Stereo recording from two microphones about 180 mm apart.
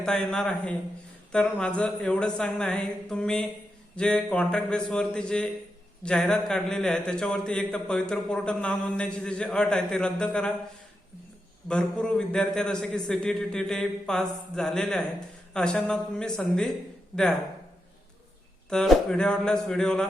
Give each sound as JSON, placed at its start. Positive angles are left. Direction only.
{"t": 0.0, "sound": "a man's voice", "side_deg": 5}
{"t": 11.7, "sound": "a man's voice", "side_deg": 5}
{"t": 18.7, "sound": "a man's voice", "side_deg": 5}